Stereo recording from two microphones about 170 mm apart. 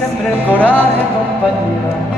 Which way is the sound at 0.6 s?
10° left (ahead or behind).